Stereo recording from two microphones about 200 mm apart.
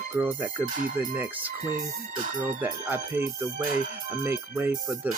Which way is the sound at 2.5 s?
10° right (ahead or behind).